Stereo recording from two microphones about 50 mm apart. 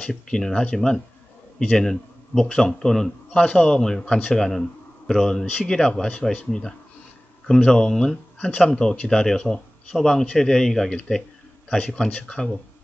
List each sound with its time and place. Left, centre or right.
0.1 s a man's voice: centre
3.3 s a man's voice: left